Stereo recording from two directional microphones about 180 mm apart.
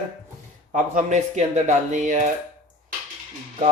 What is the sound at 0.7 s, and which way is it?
Speech, 45° right (ahead or behind).